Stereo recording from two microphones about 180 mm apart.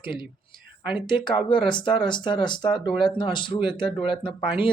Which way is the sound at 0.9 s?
25° left (ahead or behind).